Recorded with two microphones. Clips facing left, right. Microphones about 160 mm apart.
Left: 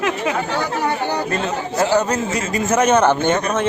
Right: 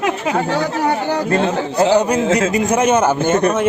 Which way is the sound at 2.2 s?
90° right.